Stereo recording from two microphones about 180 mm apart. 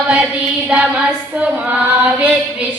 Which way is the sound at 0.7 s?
5° right (ahead or behind).